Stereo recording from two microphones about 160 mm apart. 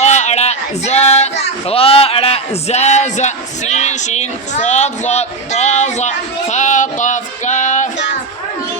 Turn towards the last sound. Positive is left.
turn(degrees=50)  # may be behind; listen again after turning